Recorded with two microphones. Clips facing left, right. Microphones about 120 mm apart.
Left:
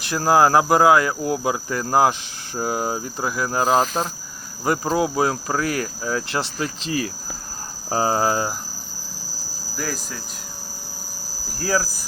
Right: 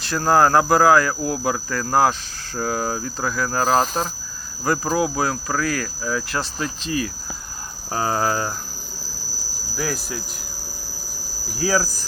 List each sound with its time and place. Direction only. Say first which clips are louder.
0.0 s speech: even; 20° left (ahead or behind)
3.6 s cricket: even; 5° left (ahead or behind)
4.6 s speech: even; 20° left (ahead or behind)
9.7 s cricket: right 3 dB; 5° right (ahead or behind)
11.5 s cricket: right 2 dB; centre (ahead or behind)